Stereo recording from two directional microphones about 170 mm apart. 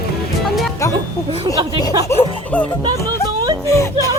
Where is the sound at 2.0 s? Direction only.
10° left (ahead or behind).